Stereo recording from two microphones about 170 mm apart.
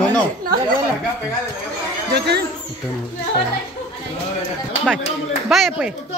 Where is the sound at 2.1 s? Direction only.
70° right (ahead or behind).